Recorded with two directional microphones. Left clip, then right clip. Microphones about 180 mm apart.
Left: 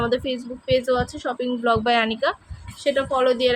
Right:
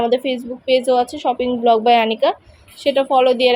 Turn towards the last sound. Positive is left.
turn(degrees=-15)  # may be behind; listen again after turning